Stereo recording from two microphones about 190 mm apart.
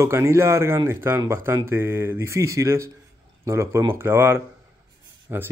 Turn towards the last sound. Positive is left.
turn(degrees=-10)  # may be behind; listen again after turning